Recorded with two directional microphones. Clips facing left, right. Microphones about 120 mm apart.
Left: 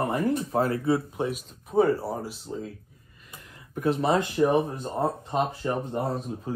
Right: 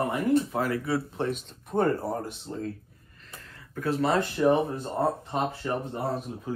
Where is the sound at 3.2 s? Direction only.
15° left (ahead or behind).